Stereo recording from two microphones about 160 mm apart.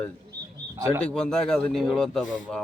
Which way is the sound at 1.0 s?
5° left (ahead or behind).